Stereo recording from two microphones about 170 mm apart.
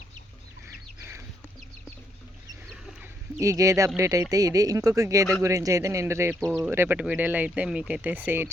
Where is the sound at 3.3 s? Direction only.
20° right (ahead or behind).